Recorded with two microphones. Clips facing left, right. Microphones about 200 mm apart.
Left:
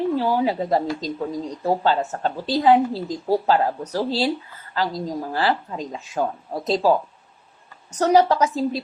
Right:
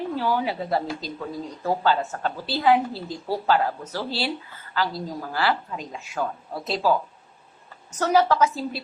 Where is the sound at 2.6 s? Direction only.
30° left (ahead or behind).